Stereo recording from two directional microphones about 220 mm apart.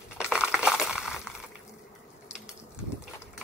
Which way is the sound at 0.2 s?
5° right (ahead or behind).